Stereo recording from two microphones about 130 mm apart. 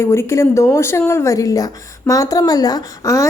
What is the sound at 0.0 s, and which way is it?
A woman's voice, 20° left (ahead or behind).